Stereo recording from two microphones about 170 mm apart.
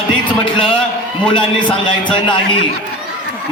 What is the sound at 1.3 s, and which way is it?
Speech, 30° left (ahead or behind).